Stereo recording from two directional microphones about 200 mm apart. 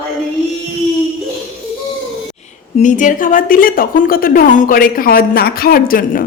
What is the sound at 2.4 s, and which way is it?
A woman's voice, 35° left (ahead or behind).